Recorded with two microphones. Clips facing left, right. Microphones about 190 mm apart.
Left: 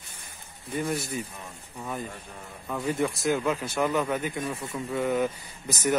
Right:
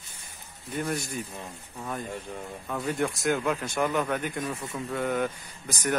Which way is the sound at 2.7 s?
Centre (ahead or behind).